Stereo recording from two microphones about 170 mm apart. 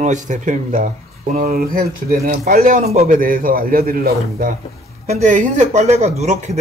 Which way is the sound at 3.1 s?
55° right (ahead or behind).